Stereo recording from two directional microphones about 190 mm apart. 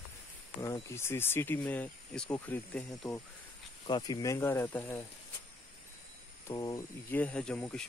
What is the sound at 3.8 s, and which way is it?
Speech, 25° left (ahead or behind).